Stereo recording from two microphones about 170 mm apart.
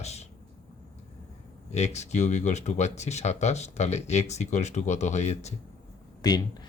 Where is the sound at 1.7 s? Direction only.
40° left (ahead or behind).